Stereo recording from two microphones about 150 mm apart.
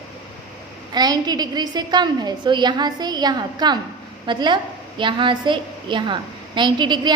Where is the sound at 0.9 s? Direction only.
25° right (ahead or behind).